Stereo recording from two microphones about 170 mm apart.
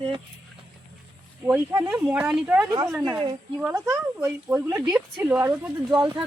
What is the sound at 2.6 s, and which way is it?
Speech, 25° right (ahead or behind).